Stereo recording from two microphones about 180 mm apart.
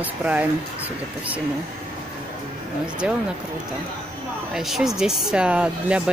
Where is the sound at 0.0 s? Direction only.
10° right (ahead or behind).